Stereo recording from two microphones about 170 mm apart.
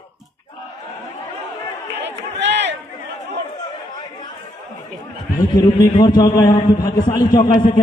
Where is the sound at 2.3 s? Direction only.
90° right.